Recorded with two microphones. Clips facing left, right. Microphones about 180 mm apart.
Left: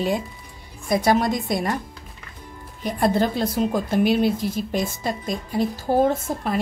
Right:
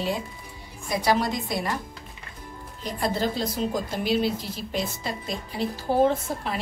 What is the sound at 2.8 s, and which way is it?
A woman's voice, 55° left (ahead or behind).